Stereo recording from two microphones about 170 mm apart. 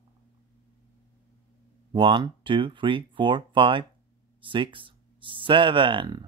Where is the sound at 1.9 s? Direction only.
30° right (ahead or behind).